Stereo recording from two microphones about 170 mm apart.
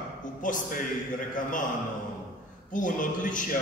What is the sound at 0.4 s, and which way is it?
Speech, 50° left (ahead or behind).